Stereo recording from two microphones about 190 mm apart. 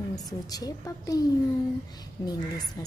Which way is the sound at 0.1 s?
20° left (ahead or behind).